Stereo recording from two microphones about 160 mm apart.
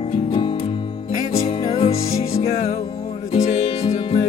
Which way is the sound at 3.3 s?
35° left (ahead or behind).